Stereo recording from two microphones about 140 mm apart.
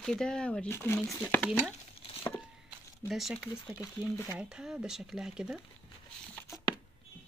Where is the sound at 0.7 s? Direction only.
15° left (ahead or behind).